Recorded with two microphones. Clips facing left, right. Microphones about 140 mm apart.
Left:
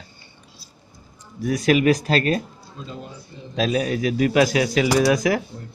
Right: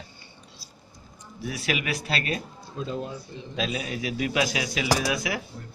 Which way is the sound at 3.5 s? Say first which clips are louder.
Left 9 dB; 45° left (ahead or behind).